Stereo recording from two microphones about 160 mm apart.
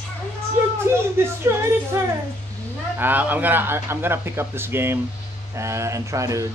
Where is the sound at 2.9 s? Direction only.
10° right (ahead or behind).